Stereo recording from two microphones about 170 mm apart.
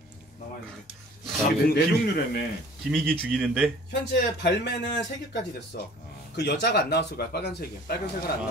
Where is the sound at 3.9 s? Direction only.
90° left.